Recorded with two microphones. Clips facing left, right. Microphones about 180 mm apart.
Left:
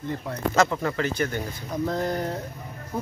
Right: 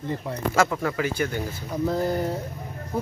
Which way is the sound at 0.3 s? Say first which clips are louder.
Left 1 dB; 5° right (ahead or behind).